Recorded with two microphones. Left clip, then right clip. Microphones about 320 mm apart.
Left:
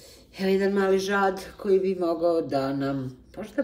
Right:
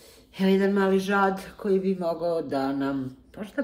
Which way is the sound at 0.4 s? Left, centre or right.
Centre.